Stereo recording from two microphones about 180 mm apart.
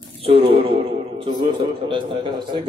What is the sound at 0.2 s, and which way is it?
A man's voice, 30° right (ahead or behind).